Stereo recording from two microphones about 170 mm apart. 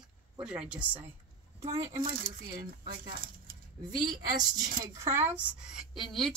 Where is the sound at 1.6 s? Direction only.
20° right (ahead or behind).